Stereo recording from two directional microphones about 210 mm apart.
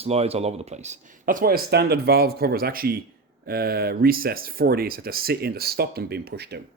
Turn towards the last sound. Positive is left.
turn(degrees=-50)  # may be behind; listen again after turning